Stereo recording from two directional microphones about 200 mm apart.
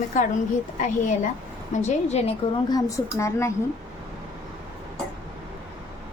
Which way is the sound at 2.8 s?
15° left (ahead or behind).